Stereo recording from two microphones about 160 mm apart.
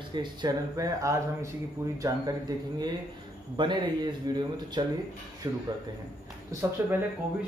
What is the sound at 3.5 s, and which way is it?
A man's voice, 30° right (ahead or behind).